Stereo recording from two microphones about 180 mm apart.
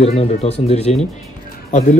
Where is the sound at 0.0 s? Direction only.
35° left (ahead or behind).